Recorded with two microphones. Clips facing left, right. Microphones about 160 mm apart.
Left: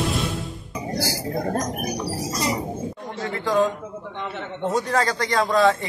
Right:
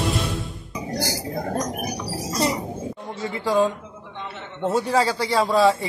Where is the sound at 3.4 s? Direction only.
10° right (ahead or behind).